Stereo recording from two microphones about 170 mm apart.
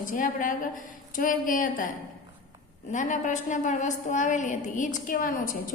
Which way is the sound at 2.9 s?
45° left (ahead or behind).